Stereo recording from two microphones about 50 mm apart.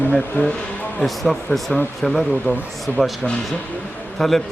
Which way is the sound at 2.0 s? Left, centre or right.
Centre.